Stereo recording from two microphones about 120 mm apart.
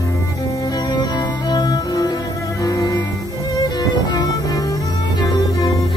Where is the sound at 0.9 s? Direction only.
35° left (ahead or behind).